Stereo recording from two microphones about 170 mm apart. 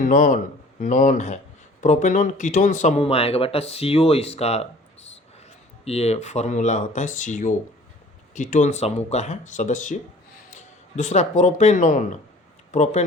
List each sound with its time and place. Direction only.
0.0 s speech: 50° left (ahead or behind)
5.8 s speech: 35° left (ahead or behind)